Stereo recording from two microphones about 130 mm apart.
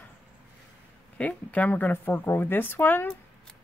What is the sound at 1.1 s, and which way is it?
Speech, 10° left (ahead or behind).